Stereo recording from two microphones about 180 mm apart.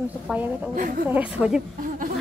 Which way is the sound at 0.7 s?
50° right (ahead or behind).